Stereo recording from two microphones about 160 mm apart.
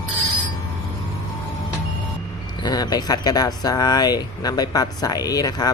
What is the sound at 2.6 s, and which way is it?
Speech, 25° left (ahead or behind).